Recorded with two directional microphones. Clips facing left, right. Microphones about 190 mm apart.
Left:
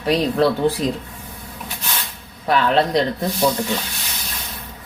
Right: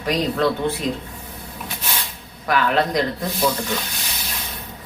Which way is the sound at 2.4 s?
25° left (ahead or behind).